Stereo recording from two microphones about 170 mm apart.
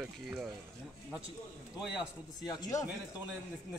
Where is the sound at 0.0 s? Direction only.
5° right (ahead or behind).